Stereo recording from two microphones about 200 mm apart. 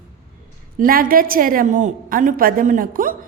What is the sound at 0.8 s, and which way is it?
A woman's voice, 45° right (ahead or behind).